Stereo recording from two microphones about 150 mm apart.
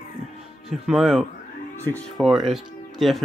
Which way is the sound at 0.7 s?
Centre (ahead or behind).